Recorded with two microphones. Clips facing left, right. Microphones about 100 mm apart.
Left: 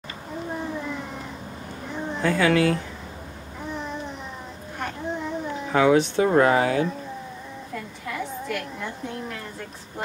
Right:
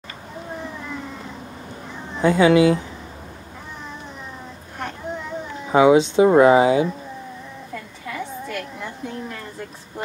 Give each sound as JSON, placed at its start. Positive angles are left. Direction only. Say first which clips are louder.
{"t": 2.2, "sound": "speech", "louder": "right 6 dB", "side_deg": -20}
{"t": 5.7, "sound": "speech", "louder": "right 5 dB", "side_deg": -15}
{"t": 7.7, "sound": "a sound", "louder": "even", "side_deg": 0}